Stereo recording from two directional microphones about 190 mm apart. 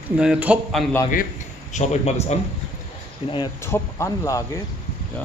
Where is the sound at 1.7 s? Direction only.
35° left (ahead or behind).